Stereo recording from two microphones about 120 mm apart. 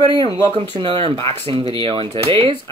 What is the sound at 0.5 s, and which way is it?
Speech, 50° right (ahead or behind).